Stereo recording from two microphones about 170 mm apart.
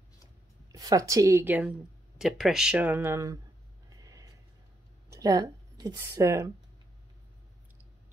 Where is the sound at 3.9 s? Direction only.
20° right (ahead or behind).